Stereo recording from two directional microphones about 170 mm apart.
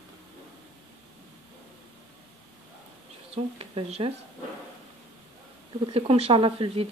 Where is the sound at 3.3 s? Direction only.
35° right (ahead or behind).